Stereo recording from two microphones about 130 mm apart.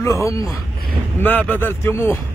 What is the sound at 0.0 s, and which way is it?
A man's voice, 25° left (ahead or behind).